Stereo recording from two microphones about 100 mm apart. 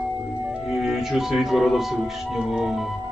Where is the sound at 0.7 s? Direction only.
5° right (ahead or behind).